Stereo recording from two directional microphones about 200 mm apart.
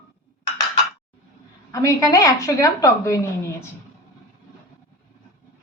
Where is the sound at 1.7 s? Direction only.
15° left (ahead or behind).